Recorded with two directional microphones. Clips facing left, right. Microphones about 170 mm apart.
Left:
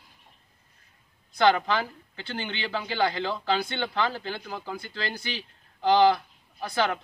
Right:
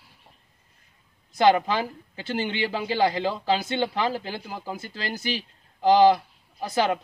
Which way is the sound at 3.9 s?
20° right (ahead or behind).